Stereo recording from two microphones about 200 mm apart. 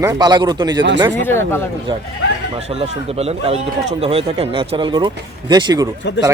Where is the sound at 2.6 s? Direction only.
30° right (ahead or behind).